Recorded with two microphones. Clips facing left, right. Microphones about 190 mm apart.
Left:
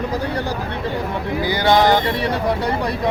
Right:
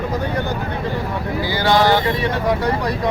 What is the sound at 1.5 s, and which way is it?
Speech, 20° left (ahead or behind).